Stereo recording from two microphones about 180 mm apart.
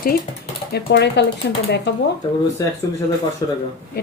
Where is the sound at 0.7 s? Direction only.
70° left (ahead or behind).